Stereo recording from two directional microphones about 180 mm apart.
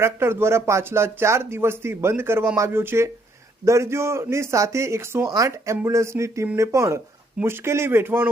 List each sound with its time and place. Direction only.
0.0 s speech: 15° right (ahead or behind)